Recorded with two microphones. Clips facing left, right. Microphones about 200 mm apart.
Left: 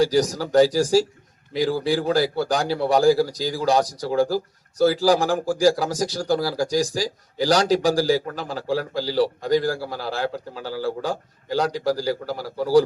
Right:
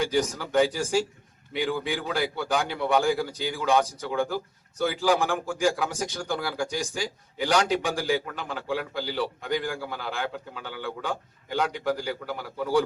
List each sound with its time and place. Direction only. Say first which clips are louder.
0.0 s a man's voice: left 6 dB; 35° left (ahead or behind)